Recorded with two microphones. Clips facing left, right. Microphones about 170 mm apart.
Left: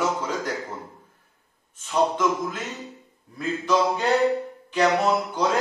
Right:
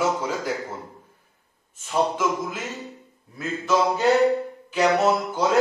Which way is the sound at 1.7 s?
5° right (ahead or behind).